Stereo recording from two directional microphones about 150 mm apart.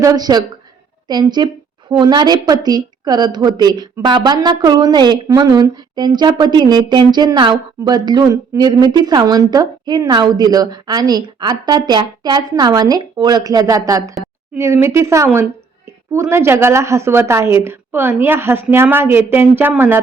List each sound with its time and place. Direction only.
0.0 s a woman's voice: 25° right (ahead or behind)